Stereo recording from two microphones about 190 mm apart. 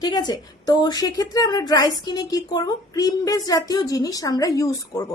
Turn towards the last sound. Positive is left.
turn(degrees=15)  # may be behind; listen again after turning